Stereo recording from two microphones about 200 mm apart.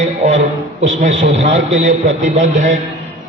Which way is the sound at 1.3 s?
65° right (ahead or behind).